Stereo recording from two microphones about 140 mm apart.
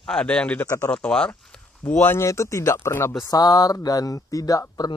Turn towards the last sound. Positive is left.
turn(degrees=25)  # may be behind; listen again after turning